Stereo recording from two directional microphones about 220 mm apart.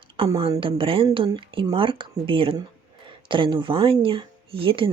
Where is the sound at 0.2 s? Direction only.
25° right (ahead or behind).